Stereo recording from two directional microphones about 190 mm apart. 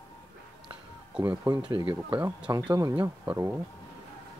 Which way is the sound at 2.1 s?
5° right (ahead or behind).